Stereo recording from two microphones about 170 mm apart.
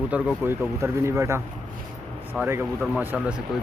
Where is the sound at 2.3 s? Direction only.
10° left (ahead or behind).